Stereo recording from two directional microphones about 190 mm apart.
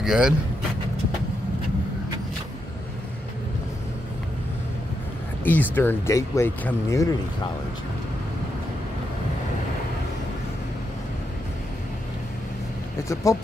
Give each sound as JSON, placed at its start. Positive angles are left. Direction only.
{"t": 0.0, "sound": "speech", "side_deg": 0}
{"t": 5.4, "sound": "speech", "side_deg": 10}
{"t": 13.1, "sound": "speech", "side_deg": 15}